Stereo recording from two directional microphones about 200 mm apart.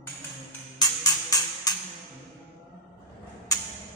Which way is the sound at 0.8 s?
15° left (ahead or behind).